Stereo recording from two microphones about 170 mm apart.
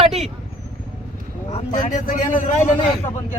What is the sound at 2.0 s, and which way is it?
Speech, 50° left (ahead or behind).